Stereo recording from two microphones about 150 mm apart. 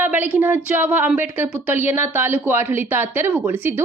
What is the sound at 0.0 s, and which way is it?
Speech, 10° right (ahead or behind).